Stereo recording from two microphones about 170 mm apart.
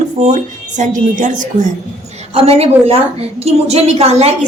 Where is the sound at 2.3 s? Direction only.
35° right (ahead or behind).